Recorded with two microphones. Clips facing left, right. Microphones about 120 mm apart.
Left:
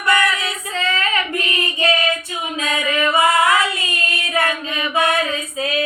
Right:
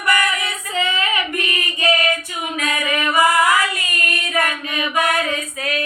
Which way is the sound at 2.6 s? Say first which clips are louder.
Left 2 dB; 20° left (ahead or behind).